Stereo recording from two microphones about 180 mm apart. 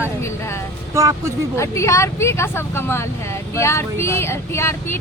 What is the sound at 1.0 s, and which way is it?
Speech, 15° right (ahead or behind).